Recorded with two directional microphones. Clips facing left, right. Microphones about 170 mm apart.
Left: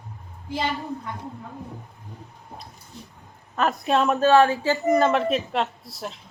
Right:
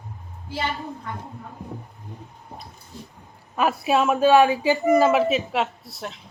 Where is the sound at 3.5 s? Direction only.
10° right (ahead or behind).